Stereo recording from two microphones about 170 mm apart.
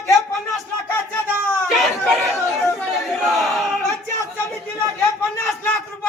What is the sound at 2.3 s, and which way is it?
Chatter, 15° left (ahead or behind).